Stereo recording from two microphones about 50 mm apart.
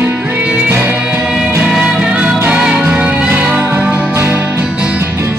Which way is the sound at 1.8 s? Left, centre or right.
Centre.